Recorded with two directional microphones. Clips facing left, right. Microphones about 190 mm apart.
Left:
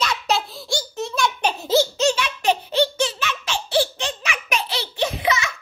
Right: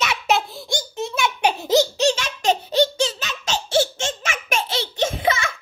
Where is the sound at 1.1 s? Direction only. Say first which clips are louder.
Right 2 dB; 15° right (ahead or behind).